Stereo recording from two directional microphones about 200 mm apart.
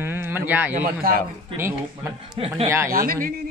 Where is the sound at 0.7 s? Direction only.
45° right (ahead or behind).